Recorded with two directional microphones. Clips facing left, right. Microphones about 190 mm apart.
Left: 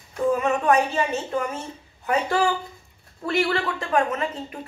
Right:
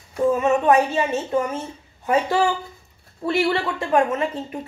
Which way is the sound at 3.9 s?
20° right (ahead or behind).